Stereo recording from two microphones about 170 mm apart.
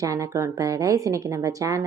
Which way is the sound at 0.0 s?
20° right (ahead or behind).